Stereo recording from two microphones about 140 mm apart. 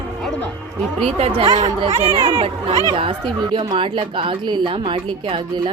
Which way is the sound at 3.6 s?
35° right (ahead or behind).